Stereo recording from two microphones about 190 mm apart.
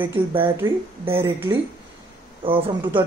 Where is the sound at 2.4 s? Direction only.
30° right (ahead or behind).